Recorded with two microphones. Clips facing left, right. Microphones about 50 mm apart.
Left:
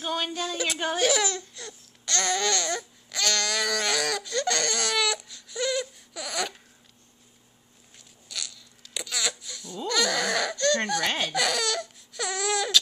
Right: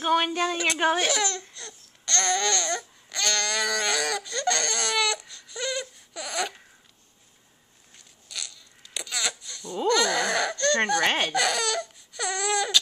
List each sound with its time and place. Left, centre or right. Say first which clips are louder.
0.0 s speech: right 6 dB; right
1.0 s speech: left 2 dB; centre
1.5 s babbling: left 2 dB; centre
8.3 s a sound: left 1 dB; centre
9.8 s baby cry: right 3 dB; centre